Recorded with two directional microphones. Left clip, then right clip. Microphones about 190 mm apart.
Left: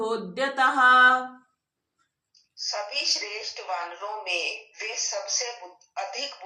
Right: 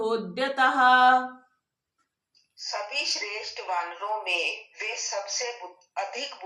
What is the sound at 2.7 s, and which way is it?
Speech, 25° right (ahead or behind).